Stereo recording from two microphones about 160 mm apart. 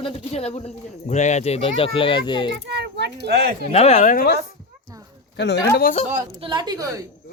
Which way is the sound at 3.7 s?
40° left (ahead or behind).